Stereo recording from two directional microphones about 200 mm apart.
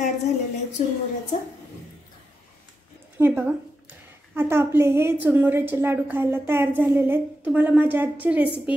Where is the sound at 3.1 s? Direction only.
10° right (ahead or behind).